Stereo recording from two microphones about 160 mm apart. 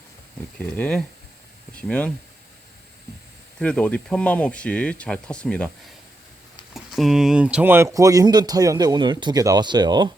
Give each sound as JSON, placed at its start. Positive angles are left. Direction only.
{"t": 0.6, "sound": "speech", "side_deg": 5}
{"t": 3.6, "sound": "speech", "side_deg": 10}
{"t": 6.7, "sound": "speech", "side_deg": 0}